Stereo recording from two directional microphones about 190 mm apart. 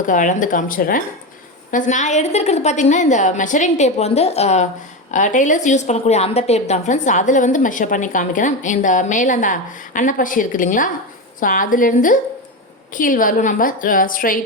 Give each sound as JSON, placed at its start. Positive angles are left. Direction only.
{"t": 0.0, "sound": "a woman's voice", "side_deg": 45}